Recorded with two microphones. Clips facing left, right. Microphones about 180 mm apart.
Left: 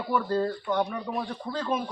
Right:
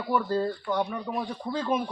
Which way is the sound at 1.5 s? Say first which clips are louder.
Right 2 dB; 10° right (ahead or behind).